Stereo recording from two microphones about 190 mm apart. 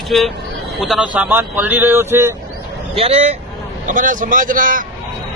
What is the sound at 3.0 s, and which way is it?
Speech, 30° right (ahead or behind).